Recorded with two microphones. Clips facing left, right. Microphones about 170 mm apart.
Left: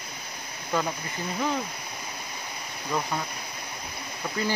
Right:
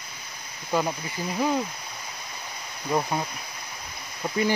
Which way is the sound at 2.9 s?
20° right (ahead or behind).